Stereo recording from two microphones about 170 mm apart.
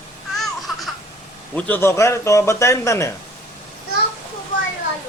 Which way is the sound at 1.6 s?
10° left (ahead or behind).